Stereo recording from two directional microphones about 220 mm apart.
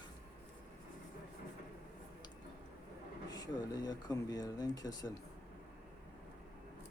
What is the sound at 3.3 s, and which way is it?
Speech, 15° left (ahead or behind).